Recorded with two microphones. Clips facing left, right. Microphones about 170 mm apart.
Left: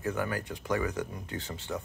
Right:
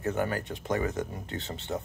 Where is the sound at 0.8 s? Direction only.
45° right (ahead or behind).